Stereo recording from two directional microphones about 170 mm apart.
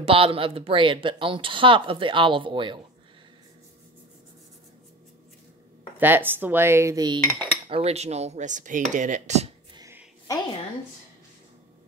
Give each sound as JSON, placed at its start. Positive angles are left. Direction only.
{"t": 0.0, "sound": "speech", "side_deg": -35}
{"t": 5.9, "sound": "cutlery", "side_deg": -10}
{"t": 7.6, "sound": "speech", "side_deg": -35}